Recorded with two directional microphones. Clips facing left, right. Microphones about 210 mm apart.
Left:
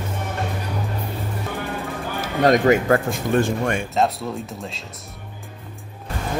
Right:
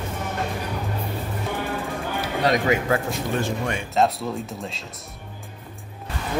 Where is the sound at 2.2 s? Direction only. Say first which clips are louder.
Left 6 dB; 50° left (ahead or behind).